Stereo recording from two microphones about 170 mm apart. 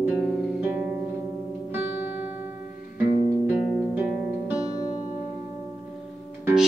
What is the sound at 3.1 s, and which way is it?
Music, 50° left (ahead or behind).